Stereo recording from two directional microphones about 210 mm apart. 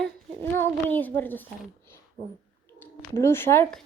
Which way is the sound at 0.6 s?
10° left (ahead or behind).